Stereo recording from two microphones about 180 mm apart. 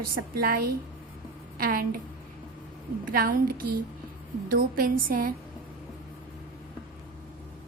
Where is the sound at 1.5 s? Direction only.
55° right (ahead or behind).